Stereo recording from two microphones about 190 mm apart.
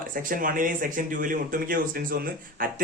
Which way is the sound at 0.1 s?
45° right (ahead or behind).